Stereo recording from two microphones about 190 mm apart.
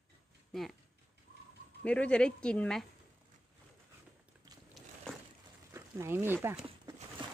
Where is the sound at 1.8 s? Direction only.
5° left (ahead or behind).